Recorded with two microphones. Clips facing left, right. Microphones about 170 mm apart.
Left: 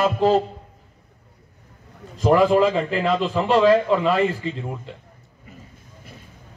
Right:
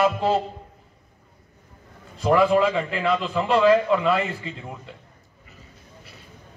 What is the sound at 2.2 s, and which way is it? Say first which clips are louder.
A man's voice: left 2 dB; 35° left (ahead or behind).